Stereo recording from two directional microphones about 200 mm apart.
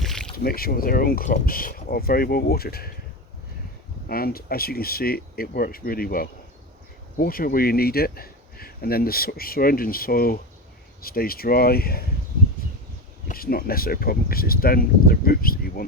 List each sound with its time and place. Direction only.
0.0 s boat: 5° left (ahead or behind)
0.3 s speech: 50° left (ahead or behind)
4.1 s speech: 50° left (ahead or behind)
13.2 s speech: 45° left (ahead or behind)